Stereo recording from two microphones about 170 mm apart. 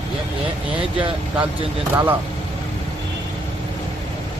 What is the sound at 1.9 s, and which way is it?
Speech, 10° right (ahead or behind).